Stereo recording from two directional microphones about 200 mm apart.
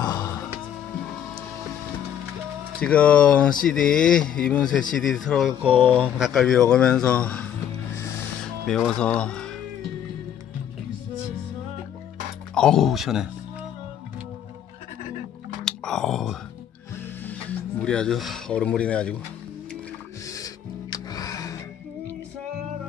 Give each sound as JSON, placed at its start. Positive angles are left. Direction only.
{"t": 0.0, "sound": "music", "side_deg": 20}
{"t": 2.8, "sound": "speech", "side_deg": 5}
{"t": 5.8, "sound": "speech", "side_deg": -25}
{"t": 6.0, "sound": "speech", "side_deg": 0}
{"t": 8.6, "sound": "speech", "side_deg": 5}
{"t": 12.5, "sound": "speech", "side_deg": 5}
{"t": 15.6, "sound": "a sound", "side_deg": 5}
{"t": 17.2, "sound": "music", "side_deg": 5}
{"t": 20.2, "sound": "music", "side_deg": 15}